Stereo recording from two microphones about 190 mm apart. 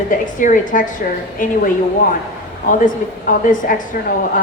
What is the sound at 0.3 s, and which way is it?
A woman's voice, 45° left (ahead or behind).